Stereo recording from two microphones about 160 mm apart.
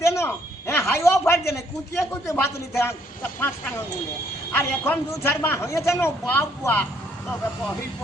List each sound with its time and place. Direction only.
0.0 s speech: 15° left (ahead or behind)
4.5 s speech: 15° left (ahead or behind)